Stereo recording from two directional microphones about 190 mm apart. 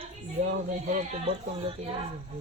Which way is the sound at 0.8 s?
45° right (ahead or behind).